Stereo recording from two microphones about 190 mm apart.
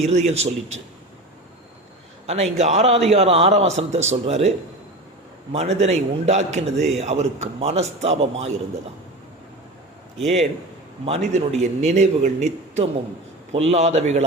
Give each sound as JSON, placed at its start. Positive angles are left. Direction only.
{"t": 0.0, "sound": "a man's voice", "side_deg": -35}
{"t": 2.2, "sound": "a man's voice", "side_deg": -35}
{"t": 11.0, "sound": "a man's voice", "side_deg": -35}